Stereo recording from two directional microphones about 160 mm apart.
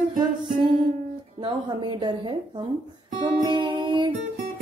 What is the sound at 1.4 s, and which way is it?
Music, 30° right (ahead or behind).